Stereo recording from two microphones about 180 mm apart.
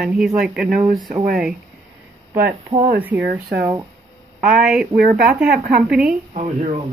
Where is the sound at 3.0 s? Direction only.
10° right (ahead or behind).